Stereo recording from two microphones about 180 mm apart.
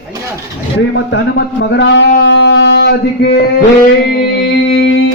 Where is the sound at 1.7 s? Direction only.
75° left (ahead or behind).